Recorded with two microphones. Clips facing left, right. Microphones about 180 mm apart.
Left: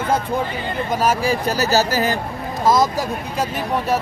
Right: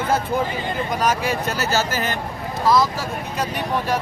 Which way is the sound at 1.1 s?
35° left (ahead or behind).